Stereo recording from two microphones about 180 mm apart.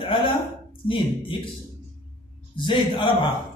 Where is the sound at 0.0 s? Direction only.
25° left (ahead or behind).